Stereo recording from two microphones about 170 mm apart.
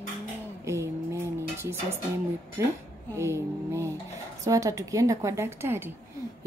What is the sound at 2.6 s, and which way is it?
A woman's voice, 15° right (ahead or behind).